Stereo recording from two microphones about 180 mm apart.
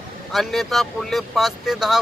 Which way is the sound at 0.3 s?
Centre (ahead or behind).